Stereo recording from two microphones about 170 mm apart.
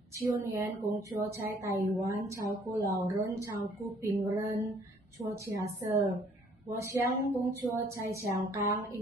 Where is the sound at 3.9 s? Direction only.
Centre (ahead or behind).